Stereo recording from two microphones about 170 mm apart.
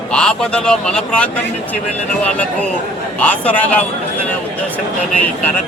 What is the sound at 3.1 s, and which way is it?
Speech, 10° left (ahead or behind).